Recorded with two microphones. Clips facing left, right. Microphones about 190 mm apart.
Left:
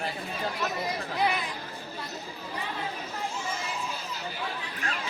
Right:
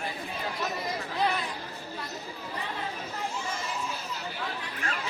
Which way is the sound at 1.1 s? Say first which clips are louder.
Left 1 dB; 15° left (ahead or behind).